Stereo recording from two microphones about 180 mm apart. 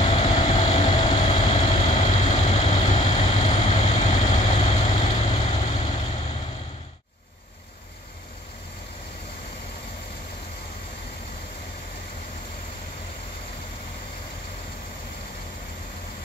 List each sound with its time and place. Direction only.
0.0 s vehicle: 35° left (ahead or behind)
0.8 s vehicle: 25° left (ahead or behind)